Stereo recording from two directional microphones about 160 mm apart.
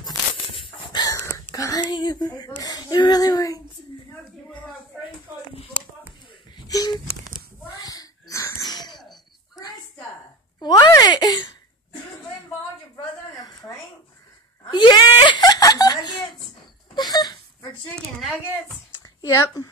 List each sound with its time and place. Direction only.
0.6 s chicken: 30° left (ahead or behind)
1.5 s speech: 20° left (ahead or behind)
6.7 s telephone dialing: 25° left (ahead or behind)
7.7 s wheeze: 25° left (ahead or behind)
10.6 s a sound: 25° left (ahead or behind)
13.3 s a sound: 20° left (ahead or behind)
14.7 s giggle: 30° left (ahead or behind)
16.9 s a sound: 25° left (ahead or behind)
19.0 s a woman's voice: 20° left (ahead or behind)